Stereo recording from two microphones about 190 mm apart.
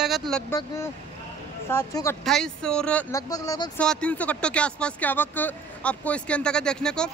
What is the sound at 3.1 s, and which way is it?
Speech, 20° left (ahead or behind).